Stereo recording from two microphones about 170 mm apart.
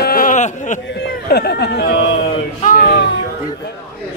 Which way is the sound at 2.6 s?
60° left (ahead or behind).